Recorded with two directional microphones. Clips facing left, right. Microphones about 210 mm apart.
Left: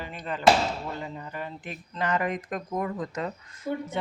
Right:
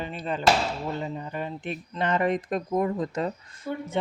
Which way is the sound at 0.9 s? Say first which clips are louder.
Right 4 dB; 20° right (ahead or behind).